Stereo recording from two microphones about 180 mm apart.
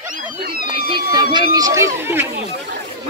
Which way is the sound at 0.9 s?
25° right (ahead or behind).